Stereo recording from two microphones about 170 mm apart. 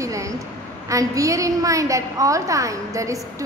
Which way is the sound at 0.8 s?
20° right (ahead or behind).